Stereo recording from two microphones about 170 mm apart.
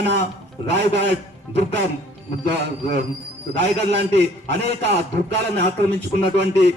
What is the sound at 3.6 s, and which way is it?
A man's voice, 80° right.